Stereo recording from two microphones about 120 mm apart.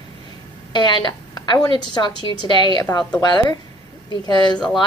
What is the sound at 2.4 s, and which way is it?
A woman's voice, 35° left (ahead or behind).